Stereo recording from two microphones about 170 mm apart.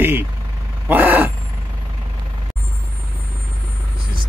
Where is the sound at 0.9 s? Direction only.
10° right (ahead or behind).